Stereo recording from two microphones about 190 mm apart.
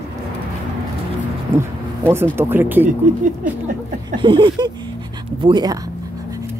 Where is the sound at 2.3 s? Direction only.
10° right (ahead or behind).